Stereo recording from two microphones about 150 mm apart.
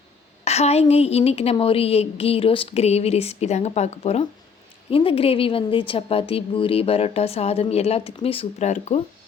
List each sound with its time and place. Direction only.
0.4 s a woman's voice: 45° left (ahead or behind)